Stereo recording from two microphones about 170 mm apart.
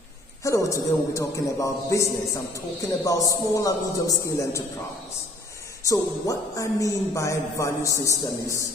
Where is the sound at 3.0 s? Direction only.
20° left (ahead or behind).